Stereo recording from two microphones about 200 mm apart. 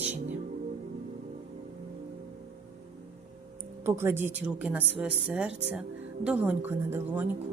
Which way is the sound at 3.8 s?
10° right (ahead or behind).